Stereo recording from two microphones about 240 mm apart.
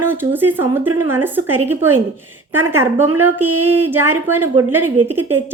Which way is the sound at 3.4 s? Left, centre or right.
Right.